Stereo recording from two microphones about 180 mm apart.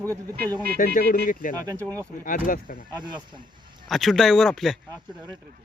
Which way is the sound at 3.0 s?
25° right (ahead or behind).